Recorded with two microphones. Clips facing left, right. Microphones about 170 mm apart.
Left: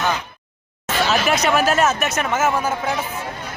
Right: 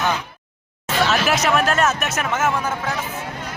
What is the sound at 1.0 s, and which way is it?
Speech, centre (ahead or behind).